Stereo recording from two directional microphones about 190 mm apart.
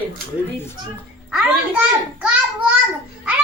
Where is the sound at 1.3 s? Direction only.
5° right (ahead or behind).